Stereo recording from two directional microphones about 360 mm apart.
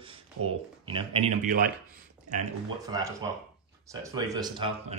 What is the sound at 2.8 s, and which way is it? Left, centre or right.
Speech, centre.